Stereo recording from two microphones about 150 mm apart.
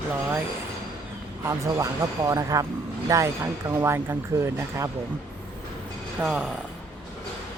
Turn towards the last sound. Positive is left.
turn(degrees=-5)  # may be behind; listen again after turning